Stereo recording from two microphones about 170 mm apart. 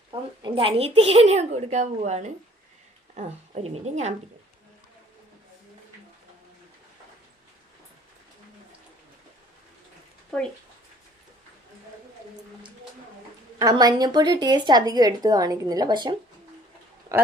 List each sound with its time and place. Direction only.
0.1 s a woman's voice: 30° right (ahead or behind)
13.6 s speech: 25° right (ahead or behind)